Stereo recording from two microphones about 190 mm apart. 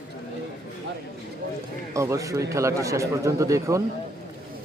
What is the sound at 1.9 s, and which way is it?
A man's voice, 15° right (ahead or behind).